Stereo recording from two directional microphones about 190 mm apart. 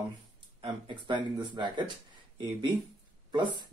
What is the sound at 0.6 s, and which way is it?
Speech, 25° right (ahead or behind).